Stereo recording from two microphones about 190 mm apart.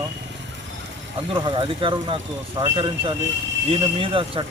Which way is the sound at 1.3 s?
25° right (ahead or behind).